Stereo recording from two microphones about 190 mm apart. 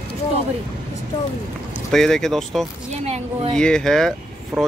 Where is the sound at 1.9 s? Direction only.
Centre (ahead or behind).